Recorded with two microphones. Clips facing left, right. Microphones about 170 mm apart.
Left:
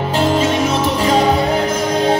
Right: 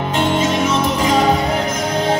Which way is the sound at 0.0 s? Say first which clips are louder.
Left 2 dB; 35° left (ahead or behind).